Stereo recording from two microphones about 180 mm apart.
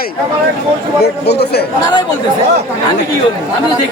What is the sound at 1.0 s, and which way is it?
Speech, 65° left (ahead or behind).